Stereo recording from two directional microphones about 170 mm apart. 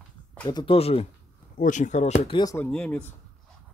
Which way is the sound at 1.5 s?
50° left (ahead or behind).